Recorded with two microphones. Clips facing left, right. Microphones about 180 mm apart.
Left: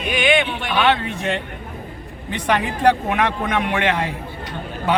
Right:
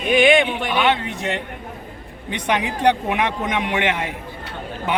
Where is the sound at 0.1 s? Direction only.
25° right (ahead or behind).